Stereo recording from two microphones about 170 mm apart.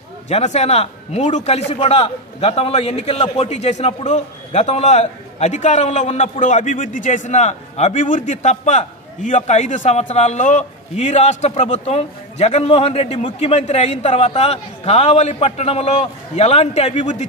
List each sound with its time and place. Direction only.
0.3 s a man's voice: 40° left (ahead or behind)